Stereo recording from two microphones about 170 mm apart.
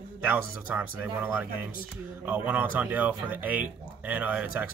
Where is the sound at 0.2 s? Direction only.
10° right (ahead or behind).